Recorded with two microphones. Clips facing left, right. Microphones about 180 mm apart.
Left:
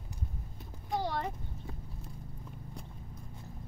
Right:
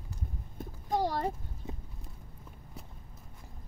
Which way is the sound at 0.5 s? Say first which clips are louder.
Right 4 dB; 45° right (ahead or behind).